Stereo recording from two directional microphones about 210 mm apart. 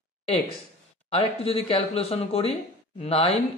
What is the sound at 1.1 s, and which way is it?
Speech, 25° left (ahead or behind).